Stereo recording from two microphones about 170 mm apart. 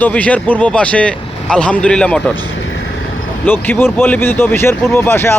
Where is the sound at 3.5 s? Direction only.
10° left (ahead or behind).